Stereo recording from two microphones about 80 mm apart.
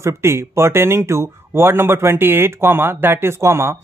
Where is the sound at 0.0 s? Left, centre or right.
Right.